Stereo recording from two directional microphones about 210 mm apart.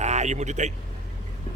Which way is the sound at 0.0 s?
35° right (ahead or behind).